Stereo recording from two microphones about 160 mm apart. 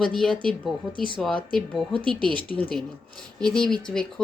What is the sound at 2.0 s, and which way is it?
Speech, 30° right (ahead or behind).